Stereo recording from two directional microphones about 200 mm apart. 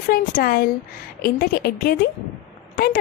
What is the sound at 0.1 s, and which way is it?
A woman's voice, 45° left (ahead or behind).